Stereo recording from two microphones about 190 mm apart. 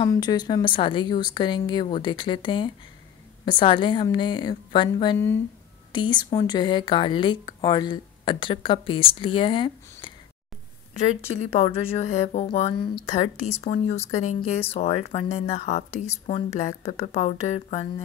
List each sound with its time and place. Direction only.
0.0 s speech: 20° left (ahead or behind)